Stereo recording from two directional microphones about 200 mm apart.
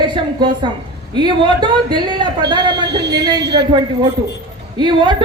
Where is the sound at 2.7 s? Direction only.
60° right (ahead or behind).